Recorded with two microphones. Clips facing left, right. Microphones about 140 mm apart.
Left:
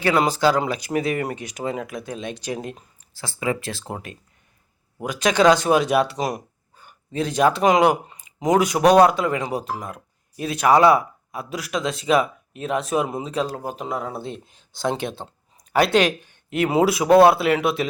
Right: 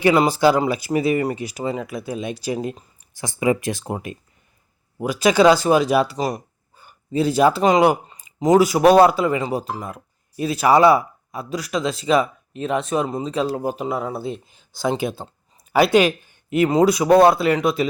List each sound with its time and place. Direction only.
0.0 s speech: 10° right (ahead or behind)
3.2 s speech: 15° right (ahead or behind); by 17.8 s 5° left (ahead or behind)